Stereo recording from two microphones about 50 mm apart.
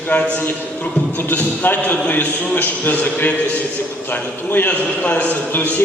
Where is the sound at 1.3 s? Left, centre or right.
Left.